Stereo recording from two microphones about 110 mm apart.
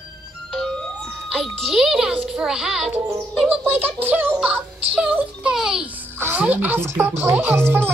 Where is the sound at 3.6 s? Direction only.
20° right (ahead or behind).